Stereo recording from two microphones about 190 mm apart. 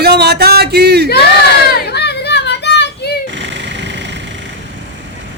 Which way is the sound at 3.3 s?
70° right (ahead or behind).